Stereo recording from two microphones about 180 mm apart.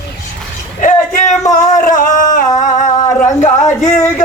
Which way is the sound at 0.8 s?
45° left (ahead or behind).